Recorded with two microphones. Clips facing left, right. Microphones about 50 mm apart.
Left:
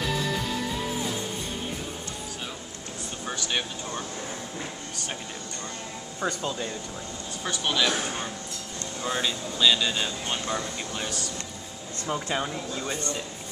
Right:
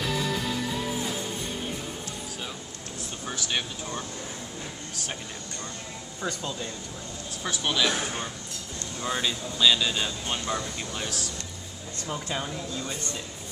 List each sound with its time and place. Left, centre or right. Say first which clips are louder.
3.3 s speech: left 1 dB; centre
6.2 s speech: left 3 dB; centre
12.1 s speech: left 4 dB; centre